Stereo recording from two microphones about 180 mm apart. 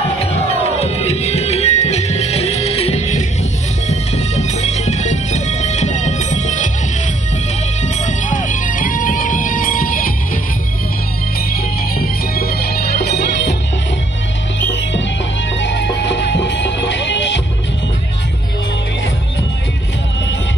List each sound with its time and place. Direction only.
0.5 s music: 35° left (ahead or behind)
7.8 s music: 45° left (ahead or behind)
11.5 s music: 55° left (ahead or behind)
15.6 s music: 75° left (ahead or behind)